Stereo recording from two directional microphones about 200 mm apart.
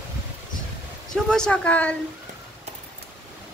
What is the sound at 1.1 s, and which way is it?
Speech, 5° left (ahead or behind).